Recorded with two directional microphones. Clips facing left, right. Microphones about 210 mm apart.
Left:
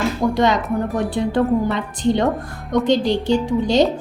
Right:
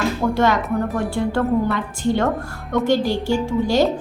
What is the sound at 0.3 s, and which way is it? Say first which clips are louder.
A woman's voice: left 1 dB; 20° left (ahead or behind).